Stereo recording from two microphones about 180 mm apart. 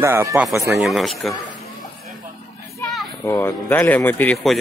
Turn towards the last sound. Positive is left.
turn(degrees=10)  # may be behind; listen again after turning